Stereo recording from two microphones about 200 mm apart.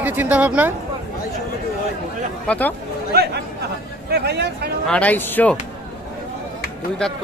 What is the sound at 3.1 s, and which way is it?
Chatter, 50° right (ahead or behind).